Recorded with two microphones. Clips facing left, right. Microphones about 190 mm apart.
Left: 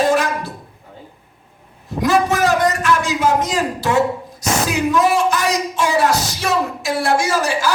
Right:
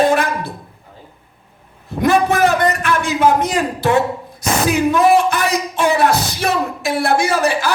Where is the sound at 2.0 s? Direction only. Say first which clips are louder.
Right 2 dB; 60° right (ahead or behind).